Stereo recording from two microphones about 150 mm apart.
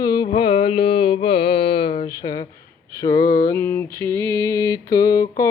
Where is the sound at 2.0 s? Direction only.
25° left (ahead or behind).